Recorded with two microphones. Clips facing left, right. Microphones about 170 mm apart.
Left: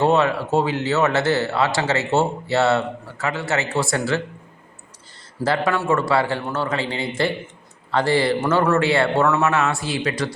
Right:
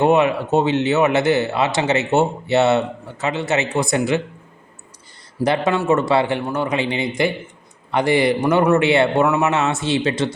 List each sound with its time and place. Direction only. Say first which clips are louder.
0.0 s speech: right 2 dB; 15° right (ahead or behind)
5.4 s speech: right 3 dB; 20° right (ahead or behind)